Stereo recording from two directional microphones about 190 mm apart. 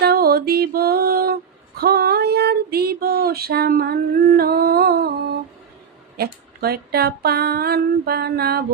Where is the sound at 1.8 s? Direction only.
55° right (ahead or behind).